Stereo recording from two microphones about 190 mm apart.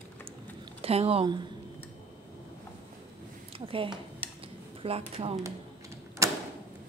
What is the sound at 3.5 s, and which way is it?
Speech, 30° right (ahead or behind).